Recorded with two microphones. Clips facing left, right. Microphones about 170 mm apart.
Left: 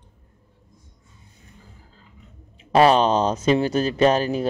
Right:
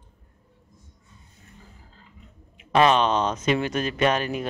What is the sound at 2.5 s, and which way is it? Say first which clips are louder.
Speech: left 3 dB; 35° left (ahead or behind).